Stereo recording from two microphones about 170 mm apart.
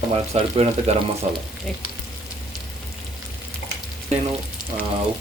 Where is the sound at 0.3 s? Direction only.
40° right (ahead or behind).